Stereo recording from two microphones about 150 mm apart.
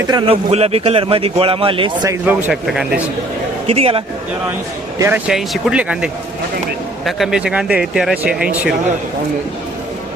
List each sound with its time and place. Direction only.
0.0 s a man's voice: 25° right (ahead or behind)
0.3 s a man's voice: 40° right (ahead or behind)
2.2 s speech: 5° right (ahead or behind)
3.7 s a man's voice: 40° right (ahead or behind)
4.9 s speech: 15° right (ahead or behind)
5.3 s speech: centre (ahead or behind)